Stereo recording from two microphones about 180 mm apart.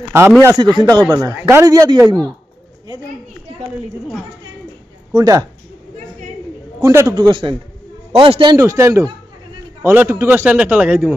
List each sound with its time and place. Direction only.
0.4 s a man's voice: 15° right (ahead or behind)
5.1 s speech: 20° right (ahead or behind)
6.8 s a man's voice: 15° right (ahead or behind)
8.5 s a man's voice: 15° right (ahead or behind)